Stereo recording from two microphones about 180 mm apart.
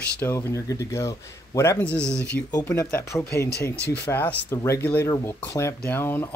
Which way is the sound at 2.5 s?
15° left (ahead or behind).